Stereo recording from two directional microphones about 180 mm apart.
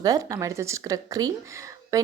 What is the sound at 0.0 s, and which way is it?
A woman's voice, 20° right (ahead or behind).